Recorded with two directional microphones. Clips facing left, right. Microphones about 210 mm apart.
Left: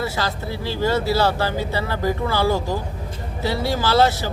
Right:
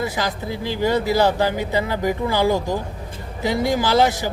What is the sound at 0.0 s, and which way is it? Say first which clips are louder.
Speech: right 1 dB; 15° right (ahead or behind).